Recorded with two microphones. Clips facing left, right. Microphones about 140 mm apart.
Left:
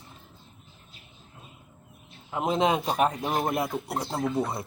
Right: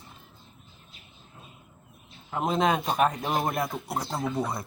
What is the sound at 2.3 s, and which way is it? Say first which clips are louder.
A man's voice: left 1 dB; 15° left (ahead or behind).